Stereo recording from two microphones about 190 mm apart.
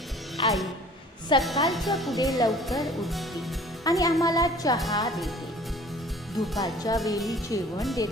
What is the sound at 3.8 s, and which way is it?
Speech, 20° left (ahead or behind).